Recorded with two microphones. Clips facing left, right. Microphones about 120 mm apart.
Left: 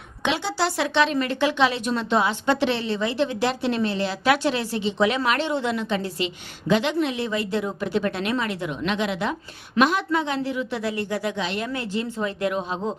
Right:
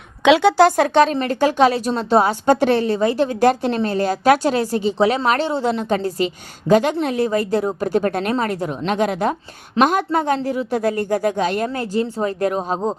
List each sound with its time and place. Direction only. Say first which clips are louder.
0.3 s speech: right 12 dB; 65° right (ahead or behind); by 12.9 s 40° right (ahead or behind)